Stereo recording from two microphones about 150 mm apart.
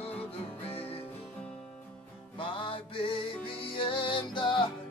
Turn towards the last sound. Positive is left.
turn(degrees=30)  # may be behind; listen again after turning